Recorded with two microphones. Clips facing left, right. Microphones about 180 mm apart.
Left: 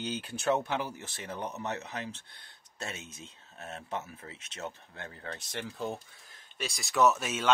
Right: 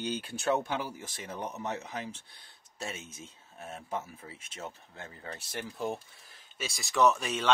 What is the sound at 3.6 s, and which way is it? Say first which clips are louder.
Speech: even; 15° right (ahead or behind).